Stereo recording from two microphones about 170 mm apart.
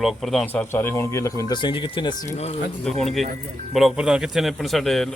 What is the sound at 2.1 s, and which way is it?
Speech, 45° left (ahead or behind).